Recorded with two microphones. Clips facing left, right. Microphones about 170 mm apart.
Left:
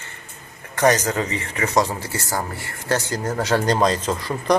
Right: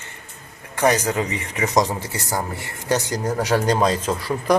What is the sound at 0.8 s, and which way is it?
Speech, 10° right (ahead or behind).